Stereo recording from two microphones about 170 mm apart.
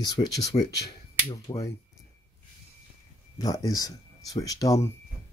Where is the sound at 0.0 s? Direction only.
25° left (ahead or behind).